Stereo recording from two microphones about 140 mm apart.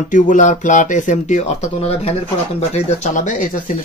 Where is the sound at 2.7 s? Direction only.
65° left (ahead or behind).